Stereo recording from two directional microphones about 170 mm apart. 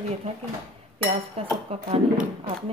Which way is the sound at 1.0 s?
35° right (ahead or behind).